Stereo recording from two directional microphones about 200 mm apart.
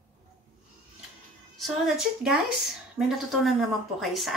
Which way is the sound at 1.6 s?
Centre (ahead or behind).